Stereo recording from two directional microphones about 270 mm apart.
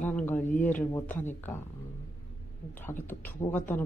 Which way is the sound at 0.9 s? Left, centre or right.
Centre.